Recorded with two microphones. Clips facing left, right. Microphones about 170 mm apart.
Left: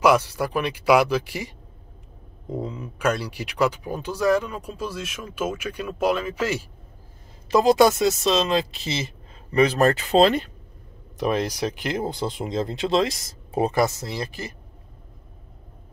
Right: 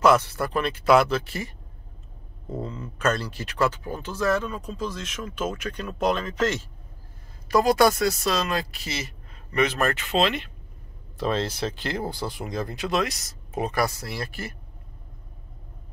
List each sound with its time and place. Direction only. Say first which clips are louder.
0.0 s speech: left 1 dB; 10° left (ahead or behind)
7.4 s speech: left 3 dB; 20° left (ahead or behind); by 10.5 s 40° left (ahead or behind)
11.1 s speech: left 2 dB; 15° left (ahead or behind)